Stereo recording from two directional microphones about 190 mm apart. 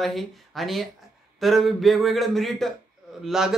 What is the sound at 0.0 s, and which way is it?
Speech, centre (ahead or behind).